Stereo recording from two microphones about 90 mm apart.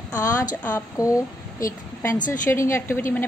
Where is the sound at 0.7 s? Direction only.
40° left (ahead or behind).